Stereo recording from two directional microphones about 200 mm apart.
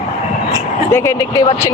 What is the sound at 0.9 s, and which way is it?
Speech, 15° left (ahead or behind).